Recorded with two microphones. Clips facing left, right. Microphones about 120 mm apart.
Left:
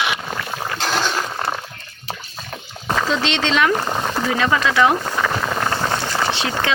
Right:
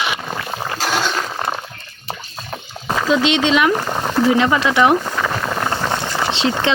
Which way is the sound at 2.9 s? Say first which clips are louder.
Right 4 dB; 10° right (ahead or behind).